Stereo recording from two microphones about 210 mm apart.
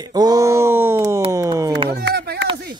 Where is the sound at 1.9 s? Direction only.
50° right (ahead or behind).